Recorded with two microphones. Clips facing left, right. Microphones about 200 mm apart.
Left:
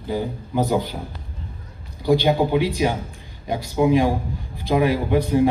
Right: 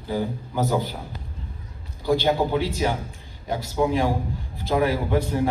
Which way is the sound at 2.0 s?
15° left (ahead or behind).